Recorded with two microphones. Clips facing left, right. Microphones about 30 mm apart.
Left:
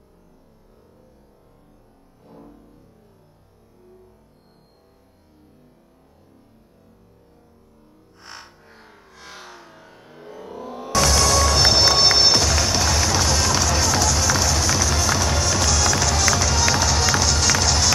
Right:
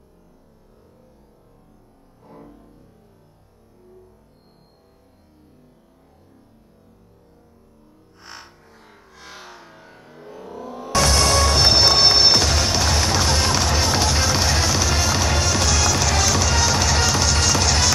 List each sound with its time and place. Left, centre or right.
2.3 s music: centre
8.2 s music: centre
8.6 s music: left
8.9 s music: centre
10.3 s a sound: centre
11.1 s music: centre
11.6 s music: centre
13.3 s music: right